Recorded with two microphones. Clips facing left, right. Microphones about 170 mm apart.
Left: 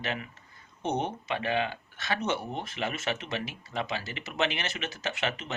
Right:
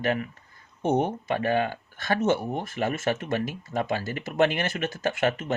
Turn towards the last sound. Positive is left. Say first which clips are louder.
# right 7 dB
turn(degrees=-50)  # may be behind; listen again after turning